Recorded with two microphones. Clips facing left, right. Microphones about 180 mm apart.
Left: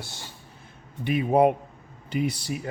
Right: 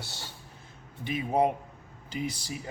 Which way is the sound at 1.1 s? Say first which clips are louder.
Left 6 dB; 65° left (ahead or behind).